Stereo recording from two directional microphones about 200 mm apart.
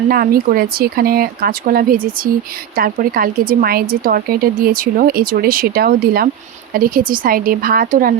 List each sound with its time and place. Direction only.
0.1 s a woman's voice: 45° right (ahead or behind)